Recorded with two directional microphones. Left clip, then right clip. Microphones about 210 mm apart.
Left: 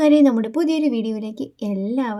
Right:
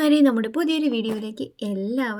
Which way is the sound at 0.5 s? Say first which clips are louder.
Left 3 dB; centre (ahead or behind).